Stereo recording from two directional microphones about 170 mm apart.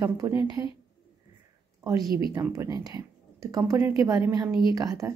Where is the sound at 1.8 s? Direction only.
20° right (ahead or behind).